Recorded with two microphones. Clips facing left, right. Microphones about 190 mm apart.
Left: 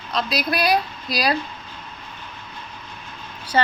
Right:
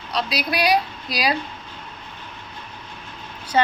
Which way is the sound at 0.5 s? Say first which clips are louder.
Right 1 dB; 15° right (ahead or behind).